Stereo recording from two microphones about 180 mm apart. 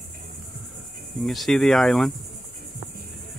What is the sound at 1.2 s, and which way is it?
Cricket, centre (ahead or behind).